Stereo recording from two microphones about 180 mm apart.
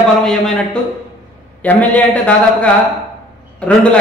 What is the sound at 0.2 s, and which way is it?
A man's voice, centre (ahead or behind).